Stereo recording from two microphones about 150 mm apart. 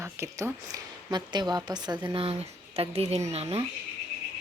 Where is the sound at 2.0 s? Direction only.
40° right (ahead or behind).